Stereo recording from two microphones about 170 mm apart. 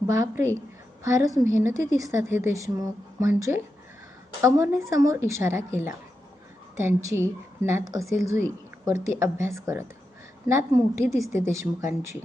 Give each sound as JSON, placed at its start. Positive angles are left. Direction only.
{"t": 0.1, "sound": "a woman's voice", "side_deg": -15}